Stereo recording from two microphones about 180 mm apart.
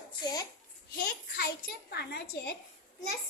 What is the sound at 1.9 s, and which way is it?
Speech, 65° left (ahead or behind).